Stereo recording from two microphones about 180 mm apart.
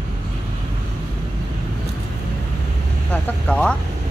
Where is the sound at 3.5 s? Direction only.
5° left (ahead or behind).